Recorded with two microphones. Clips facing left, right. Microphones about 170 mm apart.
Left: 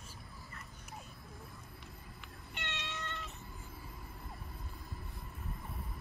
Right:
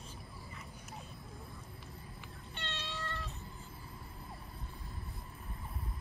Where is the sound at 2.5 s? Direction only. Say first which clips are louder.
Even; 15° left (ahead or behind).